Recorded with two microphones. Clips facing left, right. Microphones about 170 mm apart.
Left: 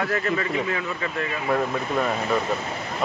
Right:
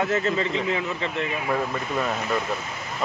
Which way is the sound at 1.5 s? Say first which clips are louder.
Left 6 dB; centre (ahead or behind).